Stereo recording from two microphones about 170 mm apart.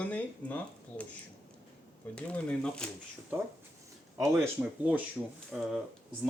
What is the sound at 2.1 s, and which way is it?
Speech, 5° left (ahead or behind).